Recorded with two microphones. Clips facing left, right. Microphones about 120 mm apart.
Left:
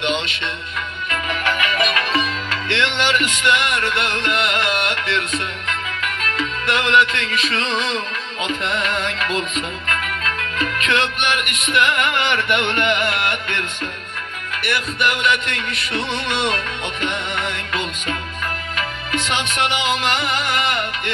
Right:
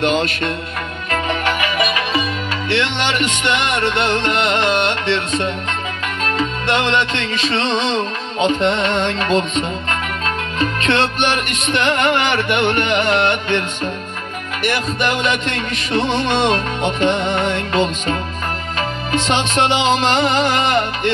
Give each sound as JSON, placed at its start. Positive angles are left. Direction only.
{"t": 0.0, "sound": "music", "side_deg": -40}
{"t": 1.1, "sound": "music", "side_deg": -30}